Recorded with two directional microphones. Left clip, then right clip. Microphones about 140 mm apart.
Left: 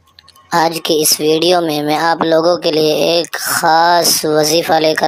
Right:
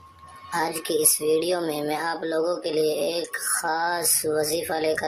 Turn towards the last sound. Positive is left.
turn(degrees=45)  # may be behind; listen again after turning